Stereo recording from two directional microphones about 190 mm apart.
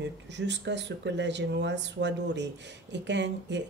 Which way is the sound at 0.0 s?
65° right (ahead or behind).